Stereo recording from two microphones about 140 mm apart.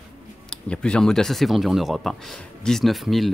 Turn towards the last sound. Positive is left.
turn(degrees=0)  # may be behind; listen again after turning